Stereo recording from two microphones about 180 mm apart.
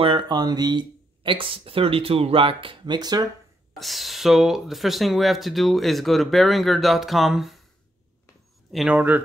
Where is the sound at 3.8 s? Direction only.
Centre (ahead or behind).